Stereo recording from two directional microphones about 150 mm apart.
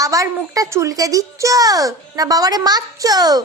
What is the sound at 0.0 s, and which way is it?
Speech, 20° right (ahead or behind).